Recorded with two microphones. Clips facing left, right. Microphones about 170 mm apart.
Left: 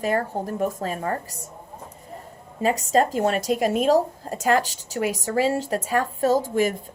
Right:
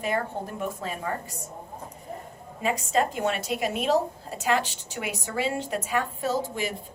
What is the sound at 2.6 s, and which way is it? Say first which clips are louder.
A woman's voice: left 5 dB; 40° left (ahead or behind).